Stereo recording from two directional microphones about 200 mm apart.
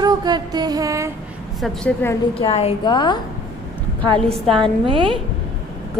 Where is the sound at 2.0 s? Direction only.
10° left (ahead or behind).